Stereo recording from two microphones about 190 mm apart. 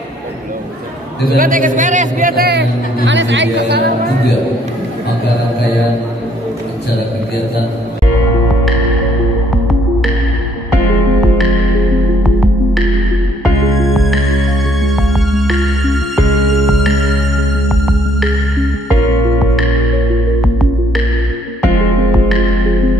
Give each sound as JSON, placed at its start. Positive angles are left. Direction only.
{"t": 1.3, "sound": "a man's voice", "side_deg": -45}
{"t": 3.1, "sound": "speech", "side_deg": -75}
{"t": 12.2, "sound": "music", "side_deg": 0}
{"t": 13.8, "sound": "music", "side_deg": 0}